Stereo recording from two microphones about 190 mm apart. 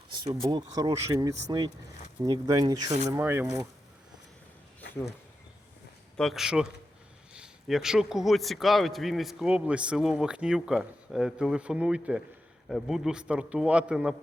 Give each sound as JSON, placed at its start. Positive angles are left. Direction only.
{"t": 0.4, "sound": "speech", "side_deg": -20}
{"t": 6.1, "sound": "a man's voice", "side_deg": 0}